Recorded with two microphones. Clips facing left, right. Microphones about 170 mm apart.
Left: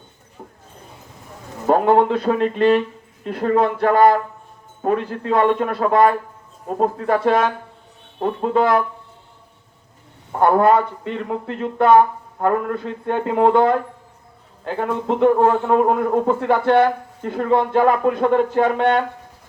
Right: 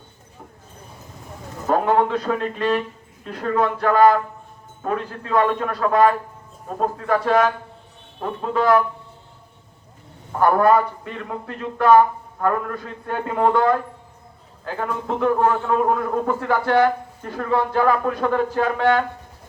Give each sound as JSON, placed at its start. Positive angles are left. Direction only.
{"t": 1.6, "sound": "a man's voice", "side_deg": 30}
{"t": 10.4, "sound": "a man's voice", "side_deg": 25}